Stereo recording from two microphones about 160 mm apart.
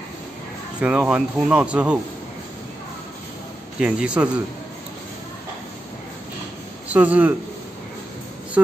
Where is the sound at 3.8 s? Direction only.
5° right (ahead or behind).